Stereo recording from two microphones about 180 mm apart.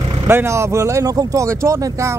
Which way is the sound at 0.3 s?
15° right (ahead or behind).